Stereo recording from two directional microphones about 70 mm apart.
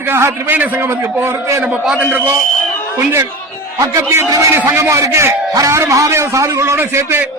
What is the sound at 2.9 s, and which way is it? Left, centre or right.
Speech, right.